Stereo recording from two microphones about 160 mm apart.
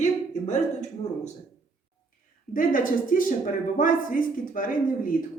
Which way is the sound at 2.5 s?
60° left (ahead or behind).